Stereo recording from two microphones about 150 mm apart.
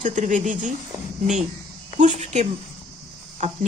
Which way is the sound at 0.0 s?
60° right (ahead or behind).